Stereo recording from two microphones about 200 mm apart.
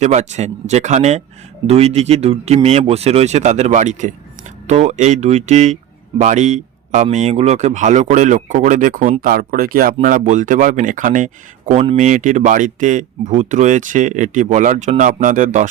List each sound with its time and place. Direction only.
0.0 s speech: 35° right (ahead or behind)